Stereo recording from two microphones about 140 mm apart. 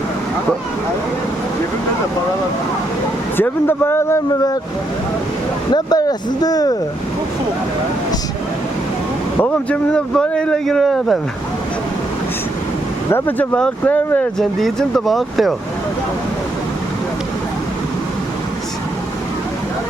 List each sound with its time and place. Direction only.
3.3 s speech: 15° left (ahead or behind)
4.3 s speech: 25° left (ahead or behind)
5.7 s speech: 30° left (ahead or behind)
9.4 s speech: 10° left (ahead or behind)
13.1 s speech: 15° left (ahead or behind)